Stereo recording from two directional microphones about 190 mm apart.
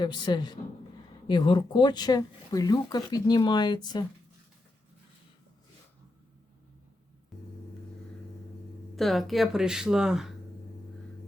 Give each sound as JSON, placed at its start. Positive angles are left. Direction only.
{"t": 0.0, "sound": "speech", "side_deg": 20}
{"t": 9.0, "sound": "speech", "side_deg": 0}